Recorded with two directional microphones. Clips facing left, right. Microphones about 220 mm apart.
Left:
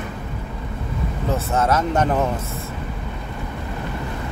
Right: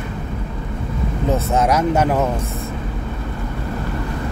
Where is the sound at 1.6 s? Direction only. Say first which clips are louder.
Right 2 dB; 10° right (ahead or behind).